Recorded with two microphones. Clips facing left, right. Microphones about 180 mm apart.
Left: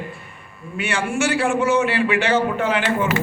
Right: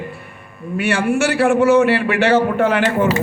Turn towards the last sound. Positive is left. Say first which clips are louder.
# right 5 dB
turn(degrees=-55)  # may be behind; listen again after turning